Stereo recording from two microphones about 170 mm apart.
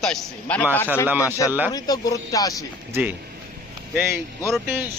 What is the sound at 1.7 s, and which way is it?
Speech, 20° left (ahead or behind).